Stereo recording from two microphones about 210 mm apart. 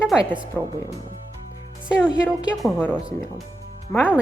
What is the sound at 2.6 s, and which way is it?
Speech, 5° left (ahead or behind).